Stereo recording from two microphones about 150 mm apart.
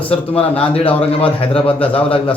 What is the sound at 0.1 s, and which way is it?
A man's voice, 40° left (ahead or behind).